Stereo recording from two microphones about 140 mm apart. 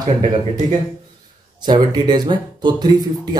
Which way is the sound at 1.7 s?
30° right (ahead or behind).